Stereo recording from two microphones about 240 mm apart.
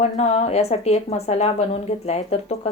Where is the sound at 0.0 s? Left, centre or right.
Left.